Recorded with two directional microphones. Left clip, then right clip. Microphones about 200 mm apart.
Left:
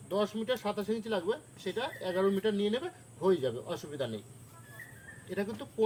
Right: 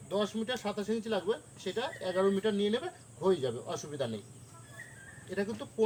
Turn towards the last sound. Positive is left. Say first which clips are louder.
# right 1 dB
turn(degrees=20)  # may be behind; listen again after turning